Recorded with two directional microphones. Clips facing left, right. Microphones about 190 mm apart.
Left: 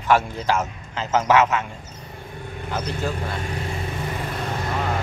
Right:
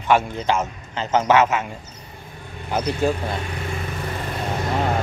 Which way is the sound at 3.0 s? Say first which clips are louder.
Right 8 dB; 15° right (ahead or behind).